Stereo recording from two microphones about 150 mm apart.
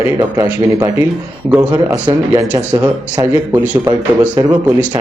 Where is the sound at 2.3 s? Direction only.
20° right (ahead or behind).